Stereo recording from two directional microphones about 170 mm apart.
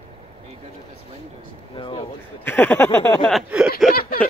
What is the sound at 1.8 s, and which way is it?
Speech, 30° left (ahead or behind).